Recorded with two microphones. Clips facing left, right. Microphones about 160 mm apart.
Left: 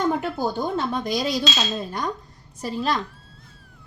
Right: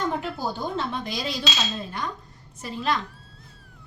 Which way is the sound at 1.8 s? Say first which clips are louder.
Left 3 dB; 40° left (ahead or behind).